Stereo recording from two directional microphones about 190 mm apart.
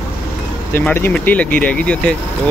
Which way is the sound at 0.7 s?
10° left (ahead or behind).